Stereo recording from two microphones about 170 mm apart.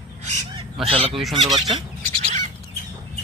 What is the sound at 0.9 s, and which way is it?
Speech, 35° right (ahead or behind).